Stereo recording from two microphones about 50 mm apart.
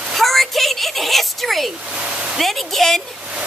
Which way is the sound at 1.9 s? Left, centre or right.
Centre.